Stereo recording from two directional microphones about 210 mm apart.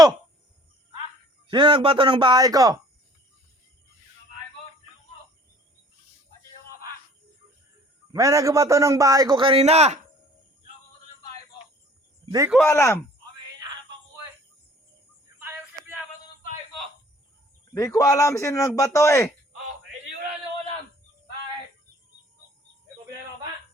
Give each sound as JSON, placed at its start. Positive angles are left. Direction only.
{"t": 1.5, "sound": "speech", "side_deg": -25}
{"t": 8.1, "sound": "a man's voice", "side_deg": -15}
{"t": 12.2, "sound": "a sound", "side_deg": -20}
{"t": 12.5, "sound": "a man's voice", "side_deg": 5}
{"t": 15.4, "sound": "a sound", "side_deg": -10}
{"t": 17.7, "sound": "a man's voice", "side_deg": 15}